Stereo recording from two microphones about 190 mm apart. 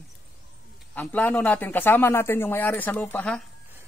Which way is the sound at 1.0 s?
10° left (ahead or behind).